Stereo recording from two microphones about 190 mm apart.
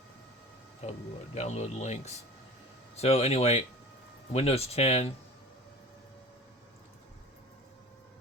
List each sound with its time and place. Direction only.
0.8 s speech: 35° left (ahead or behind)